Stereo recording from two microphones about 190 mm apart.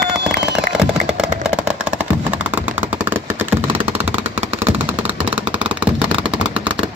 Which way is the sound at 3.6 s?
30° right (ahead or behind).